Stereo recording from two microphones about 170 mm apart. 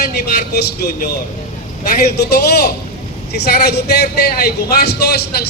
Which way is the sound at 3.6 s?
70° left (ahead or behind).